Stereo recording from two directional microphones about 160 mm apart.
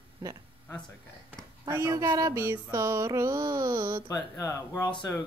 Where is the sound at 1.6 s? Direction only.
15° right (ahead or behind).